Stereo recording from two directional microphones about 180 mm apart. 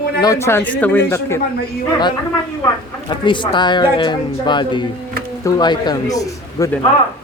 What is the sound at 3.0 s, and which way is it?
Speech, 25° left (ahead or behind).